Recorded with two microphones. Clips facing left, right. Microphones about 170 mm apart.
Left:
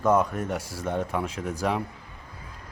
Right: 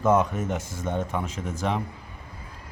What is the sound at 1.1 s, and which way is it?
Speech, centre (ahead or behind).